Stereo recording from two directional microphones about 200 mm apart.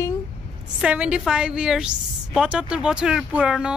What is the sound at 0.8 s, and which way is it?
Speech, 5° right (ahead or behind).